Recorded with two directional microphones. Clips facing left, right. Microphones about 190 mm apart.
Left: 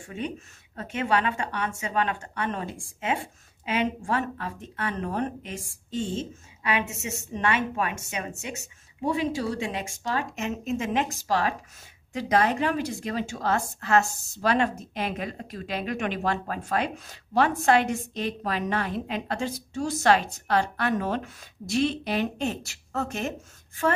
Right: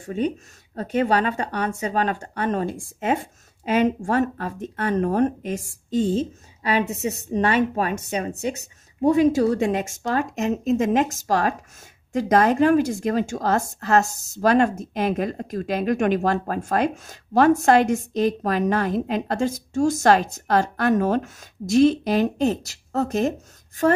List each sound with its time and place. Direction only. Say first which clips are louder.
0.0 s a woman's voice: right 9 dB; 35° right (ahead or behind)